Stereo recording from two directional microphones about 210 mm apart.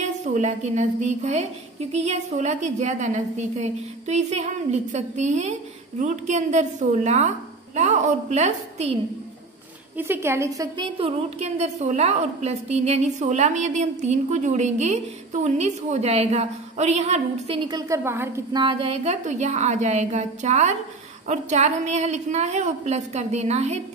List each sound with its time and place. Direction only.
0.0 s a woman's voice: 35° right (ahead or behind)
9.9 s a woman's voice: 10° right (ahead or behind); by 23.8 s 30° right (ahead or behind)